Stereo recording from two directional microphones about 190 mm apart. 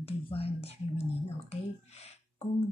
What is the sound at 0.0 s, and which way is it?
Speech, 30° left (ahead or behind).